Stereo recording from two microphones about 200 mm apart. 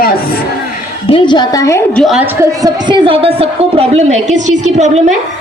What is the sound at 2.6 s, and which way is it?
A woman's voice, 25° right (ahead or behind).